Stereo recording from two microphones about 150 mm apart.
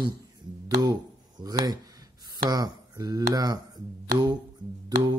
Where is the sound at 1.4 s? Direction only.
25° right (ahead or behind).